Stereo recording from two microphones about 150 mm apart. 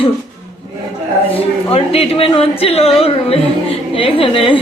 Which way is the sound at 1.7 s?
40° left (ahead or behind).